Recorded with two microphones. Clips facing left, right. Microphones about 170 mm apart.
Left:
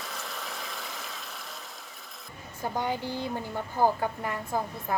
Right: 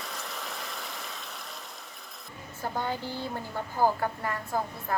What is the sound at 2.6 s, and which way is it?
A woman's voice, 15° left (ahead or behind).